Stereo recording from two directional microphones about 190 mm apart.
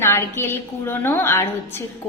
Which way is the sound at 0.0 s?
15° left (ahead or behind).